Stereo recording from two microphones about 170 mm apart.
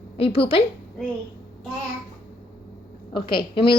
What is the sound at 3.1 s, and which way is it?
Speech, 30° left (ahead or behind).